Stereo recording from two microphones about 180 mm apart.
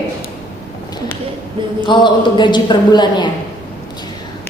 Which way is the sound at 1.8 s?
25° left (ahead or behind).